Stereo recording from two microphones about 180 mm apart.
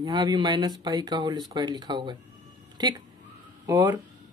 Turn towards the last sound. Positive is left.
turn(degrees=-20)  # may be behind; listen again after turning